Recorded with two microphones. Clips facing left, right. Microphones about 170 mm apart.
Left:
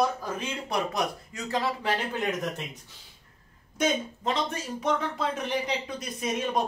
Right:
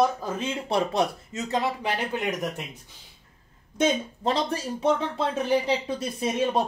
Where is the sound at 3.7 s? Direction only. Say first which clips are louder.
Right 3 dB; 30° right (ahead or behind).